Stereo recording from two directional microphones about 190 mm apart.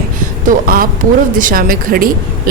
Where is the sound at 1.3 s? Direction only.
45° right (ahead or behind).